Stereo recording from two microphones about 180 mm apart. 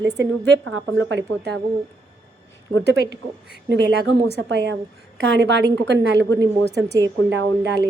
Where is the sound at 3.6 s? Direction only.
75° right (ahead or behind).